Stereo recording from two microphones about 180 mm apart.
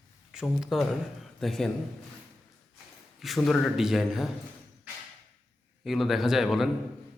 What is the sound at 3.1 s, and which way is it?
Speech, centre (ahead or behind).